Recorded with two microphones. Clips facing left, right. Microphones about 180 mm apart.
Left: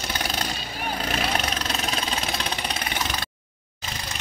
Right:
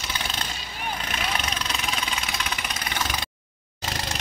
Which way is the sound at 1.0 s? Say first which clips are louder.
Left 5 dB; 40° left (ahead or behind).